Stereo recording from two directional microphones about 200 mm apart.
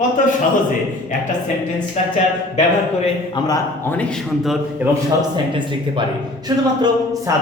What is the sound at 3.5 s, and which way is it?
A man's voice, 15° left (ahead or behind).